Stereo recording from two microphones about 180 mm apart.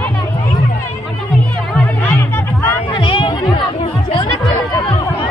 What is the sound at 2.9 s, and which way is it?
Chatter, 30° left (ahead or behind).